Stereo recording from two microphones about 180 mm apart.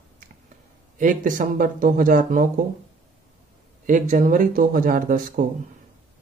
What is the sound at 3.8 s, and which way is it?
Speech, 45° right (ahead or behind).